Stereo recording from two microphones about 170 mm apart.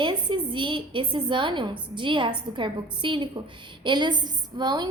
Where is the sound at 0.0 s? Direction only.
30° right (ahead or behind).